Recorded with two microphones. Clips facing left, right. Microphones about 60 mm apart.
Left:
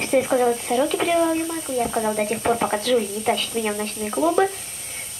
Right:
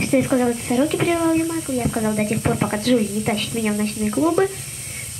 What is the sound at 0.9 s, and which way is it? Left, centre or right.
Speech, right.